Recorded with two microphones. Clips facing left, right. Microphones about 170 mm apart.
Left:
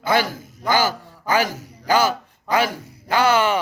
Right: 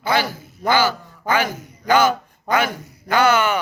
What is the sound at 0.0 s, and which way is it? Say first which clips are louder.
A man's voice: left 1 dB; 50° left (ahead or behind).